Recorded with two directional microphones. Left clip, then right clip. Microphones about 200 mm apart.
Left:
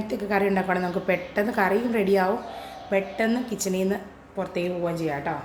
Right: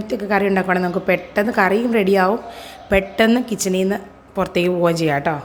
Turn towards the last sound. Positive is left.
turn(degrees=-55)  # may be behind; listen again after turning